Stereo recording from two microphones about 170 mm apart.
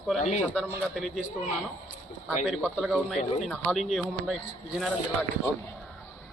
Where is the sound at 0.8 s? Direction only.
Centre (ahead or behind).